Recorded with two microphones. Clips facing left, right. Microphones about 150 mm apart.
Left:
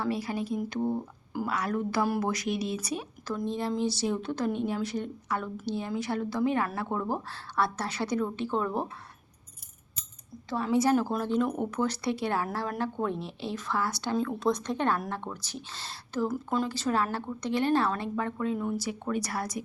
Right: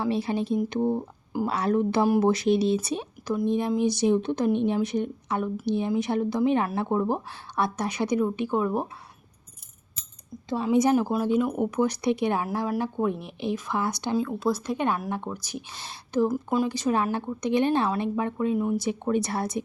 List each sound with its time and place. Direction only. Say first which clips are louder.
0.0 s speech: right 5 dB; 25° right (ahead or behind)
10.5 s speech: right 3 dB; 20° right (ahead or behind)
12.5 s speech: right 4 dB; 5° right (ahead or behind)
14.2 s speech: even; 5° right (ahead or behind); by 19.6 s 25° right (ahead or behind)